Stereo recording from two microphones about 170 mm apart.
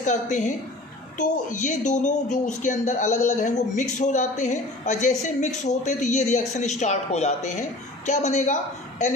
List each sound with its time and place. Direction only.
0.0 s speech: 45° left (ahead or behind)